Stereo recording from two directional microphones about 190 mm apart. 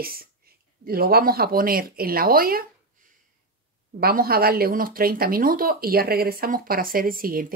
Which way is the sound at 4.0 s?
50° right (ahead or behind).